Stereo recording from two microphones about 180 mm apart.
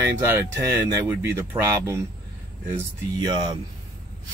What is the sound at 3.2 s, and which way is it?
Speech, 25° right (ahead or behind).